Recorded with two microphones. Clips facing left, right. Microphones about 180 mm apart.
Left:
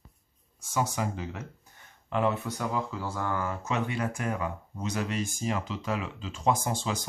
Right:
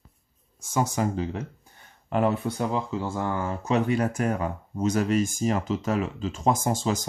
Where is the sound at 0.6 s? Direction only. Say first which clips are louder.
Right 4 dB; 45° right (ahead or behind).